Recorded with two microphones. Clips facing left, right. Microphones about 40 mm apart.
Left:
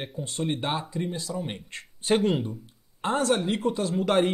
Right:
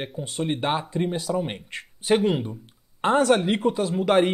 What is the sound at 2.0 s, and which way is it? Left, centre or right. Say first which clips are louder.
Speech: right 2 dB; centre.